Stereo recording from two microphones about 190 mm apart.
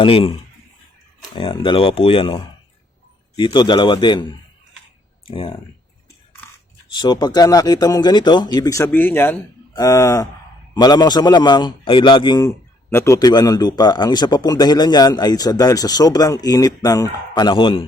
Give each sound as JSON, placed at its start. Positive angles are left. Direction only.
{"t": 0.0, "sound": "a man's voice", "side_deg": 30}
{"t": 5.3, "sound": "a man's voice", "side_deg": 30}
{"t": 6.9, "sound": "a man's voice", "side_deg": 25}